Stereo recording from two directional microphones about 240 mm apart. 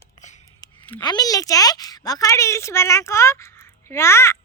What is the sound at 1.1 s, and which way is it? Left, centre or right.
A woman's voice, centre.